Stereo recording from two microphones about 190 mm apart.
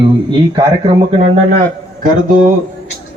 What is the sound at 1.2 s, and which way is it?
Speech, 45° right (ahead or behind).